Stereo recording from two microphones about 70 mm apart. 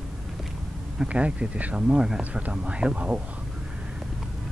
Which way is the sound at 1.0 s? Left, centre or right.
Centre.